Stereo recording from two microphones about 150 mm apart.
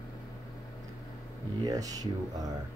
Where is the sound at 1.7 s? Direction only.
25° right (ahead or behind).